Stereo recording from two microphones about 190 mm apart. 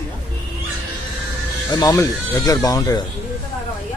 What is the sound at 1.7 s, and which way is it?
Speech, 20° left (ahead or behind).